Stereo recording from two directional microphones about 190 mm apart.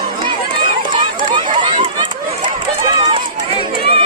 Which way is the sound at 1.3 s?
25° right (ahead or behind).